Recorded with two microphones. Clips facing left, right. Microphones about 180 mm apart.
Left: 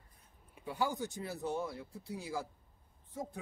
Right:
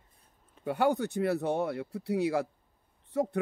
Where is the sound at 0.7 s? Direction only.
65° right (ahead or behind).